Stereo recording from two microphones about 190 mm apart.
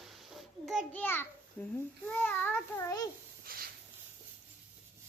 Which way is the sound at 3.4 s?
50° right (ahead or behind).